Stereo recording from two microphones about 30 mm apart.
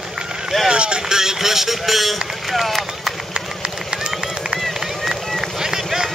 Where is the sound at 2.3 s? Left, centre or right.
Centre.